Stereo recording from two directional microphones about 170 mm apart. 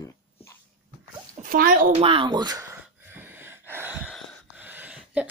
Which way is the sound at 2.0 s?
30° right (ahead or behind).